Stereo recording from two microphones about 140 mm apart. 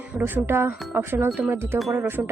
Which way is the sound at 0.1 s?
15° right (ahead or behind).